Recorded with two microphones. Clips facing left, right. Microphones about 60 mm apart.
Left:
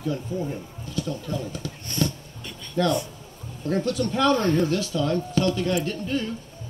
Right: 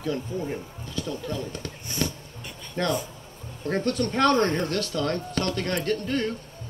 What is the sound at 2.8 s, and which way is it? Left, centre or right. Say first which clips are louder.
Speech: left 3 dB; right.